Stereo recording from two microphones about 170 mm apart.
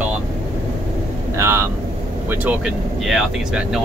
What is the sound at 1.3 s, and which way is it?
Speech, 15° right (ahead or behind).